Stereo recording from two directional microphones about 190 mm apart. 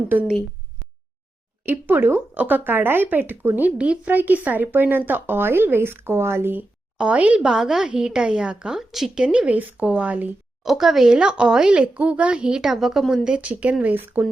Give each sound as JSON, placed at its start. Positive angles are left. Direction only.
{"t": 0.1, "sound": "speech", "side_deg": -10}
{"t": 1.6, "sound": "speech", "side_deg": -10}